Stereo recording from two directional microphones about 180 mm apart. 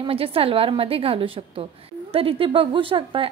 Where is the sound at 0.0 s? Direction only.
30° right (ahead or behind).